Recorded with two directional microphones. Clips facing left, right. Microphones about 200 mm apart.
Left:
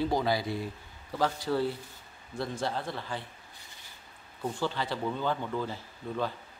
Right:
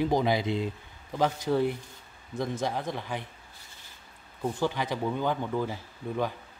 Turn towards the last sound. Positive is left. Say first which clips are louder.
# right 2 dB
turn(degrees=-15)  # may be behind; listen again after turning